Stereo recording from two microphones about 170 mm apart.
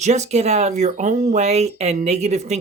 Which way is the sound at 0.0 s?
40° right (ahead or behind).